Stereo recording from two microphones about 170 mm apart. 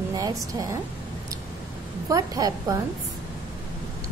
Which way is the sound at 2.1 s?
20° right (ahead or behind).